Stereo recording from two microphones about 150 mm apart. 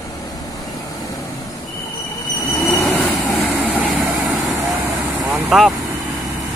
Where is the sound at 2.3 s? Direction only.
25° left (ahead or behind).